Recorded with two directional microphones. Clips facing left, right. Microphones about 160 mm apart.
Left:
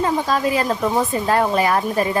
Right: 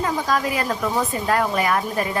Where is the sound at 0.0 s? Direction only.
25° left (ahead or behind).